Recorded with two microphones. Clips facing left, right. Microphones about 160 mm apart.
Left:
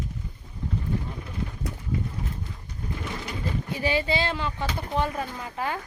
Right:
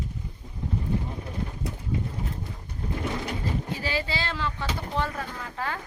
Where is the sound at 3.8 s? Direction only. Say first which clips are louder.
Left 5 dB; 20° left (ahead or behind).